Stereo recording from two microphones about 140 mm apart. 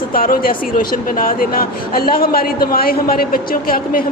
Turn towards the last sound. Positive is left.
turn(degrees=90)